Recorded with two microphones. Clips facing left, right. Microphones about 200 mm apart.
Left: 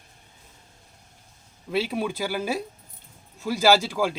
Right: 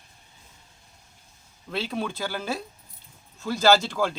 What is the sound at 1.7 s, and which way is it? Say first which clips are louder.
Speech: left 4 dB; 10° left (ahead or behind).